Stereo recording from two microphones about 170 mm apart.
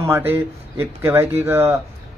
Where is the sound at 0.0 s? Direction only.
10° right (ahead or behind).